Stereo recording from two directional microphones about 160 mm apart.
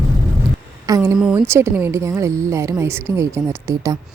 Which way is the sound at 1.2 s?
5° right (ahead or behind).